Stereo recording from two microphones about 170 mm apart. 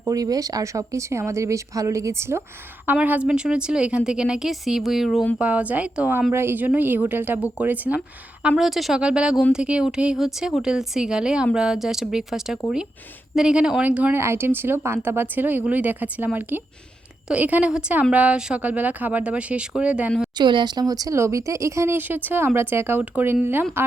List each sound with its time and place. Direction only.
0.0 s a woman's voice: 20° right (ahead or behind); by 20.3 s 5° right (ahead or behind)
20.4 s a woman's voice: 25° right (ahead or behind)